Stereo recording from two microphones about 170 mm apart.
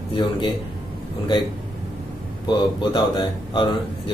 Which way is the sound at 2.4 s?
30° left (ahead or behind).